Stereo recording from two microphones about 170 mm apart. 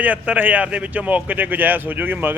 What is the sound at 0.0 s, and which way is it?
Speech, 10° right (ahead or behind).